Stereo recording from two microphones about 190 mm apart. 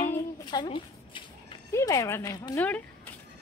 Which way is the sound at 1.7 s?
15° left (ahead or behind).